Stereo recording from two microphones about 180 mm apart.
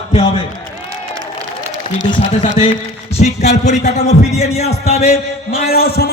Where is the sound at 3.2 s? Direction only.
40° left (ahead or behind).